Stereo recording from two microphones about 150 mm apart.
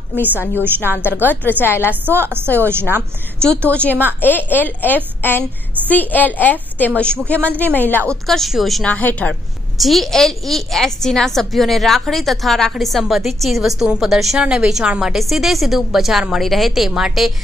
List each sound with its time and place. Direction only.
0.7 s a woman's voice: 15° right (ahead or behind)
1.3 s a woman's voice: 10° left (ahead or behind)
1.9 s a woman's voice: 15° right (ahead or behind)
3.7 s a woman's voice: 10° left (ahead or behind)